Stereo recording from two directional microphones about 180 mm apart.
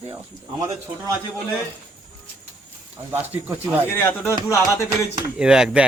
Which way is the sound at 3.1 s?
10° right (ahead or behind).